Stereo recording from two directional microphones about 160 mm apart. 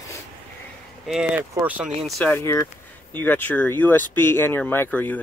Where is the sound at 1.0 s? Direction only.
Centre (ahead or behind).